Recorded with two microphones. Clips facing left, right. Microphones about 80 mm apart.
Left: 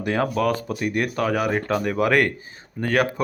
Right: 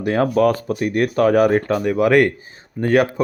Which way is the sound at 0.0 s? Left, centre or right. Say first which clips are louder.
Right 6 dB; right.